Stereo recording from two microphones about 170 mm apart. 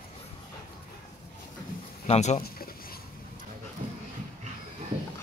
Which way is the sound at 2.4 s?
60° left (ahead or behind).